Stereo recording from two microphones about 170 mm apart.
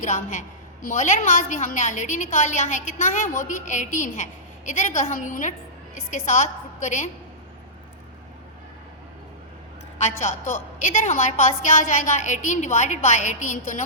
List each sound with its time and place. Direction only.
0.0 s a woman's voice: 50° left (ahead or behind)
10.0 s a woman's voice: 45° left (ahead or behind)